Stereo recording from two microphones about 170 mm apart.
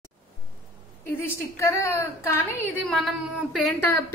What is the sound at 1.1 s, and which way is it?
A woman's voice, 15° left (ahead or behind).